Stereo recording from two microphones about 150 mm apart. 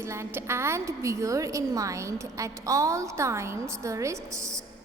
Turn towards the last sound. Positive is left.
turn(degrees=-20)  # may be behind; listen again after turning